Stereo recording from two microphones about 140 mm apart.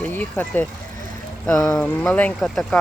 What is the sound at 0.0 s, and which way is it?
Speech, 10° left (ahead or behind).